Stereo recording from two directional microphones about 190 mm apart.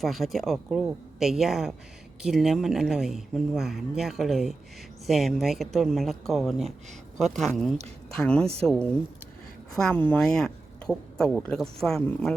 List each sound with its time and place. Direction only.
0.0 s a woman's voice: centre (ahead or behind)